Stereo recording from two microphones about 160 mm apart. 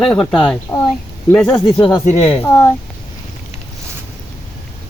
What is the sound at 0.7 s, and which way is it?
Speech, 20° left (ahead or behind).